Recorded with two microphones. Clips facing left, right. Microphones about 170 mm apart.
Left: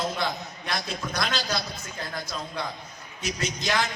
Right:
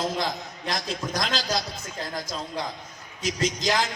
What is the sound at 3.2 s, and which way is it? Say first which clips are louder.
Speech: right 4 dB; 90° right.